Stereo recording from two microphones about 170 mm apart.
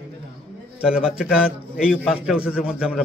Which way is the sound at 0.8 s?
5° right (ahead or behind).